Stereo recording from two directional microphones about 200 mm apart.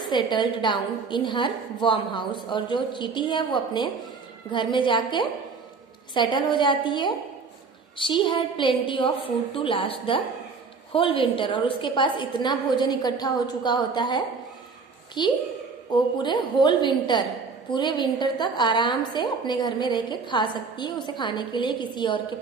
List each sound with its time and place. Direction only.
0.1 s a woman's voice: 25° left (ahead or behind)